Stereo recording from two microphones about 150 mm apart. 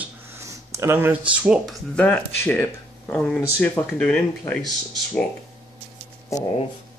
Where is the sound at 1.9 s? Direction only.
10° left (ahead or behind).